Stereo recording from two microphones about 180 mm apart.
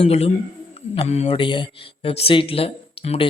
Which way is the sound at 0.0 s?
35° left (ahead or behind).